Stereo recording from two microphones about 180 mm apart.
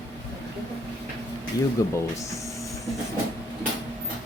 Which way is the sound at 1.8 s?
20° left (ahead or behind).